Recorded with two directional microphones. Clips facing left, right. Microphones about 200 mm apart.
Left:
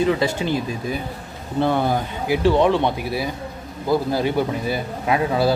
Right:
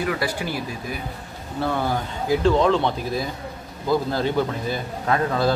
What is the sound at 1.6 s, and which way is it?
A man's voice, 25° left (ahead or behind).